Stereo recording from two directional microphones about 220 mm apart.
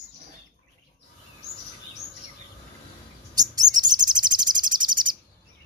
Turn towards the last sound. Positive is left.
turn(degrees=-20)  # may be behind; listen again after turning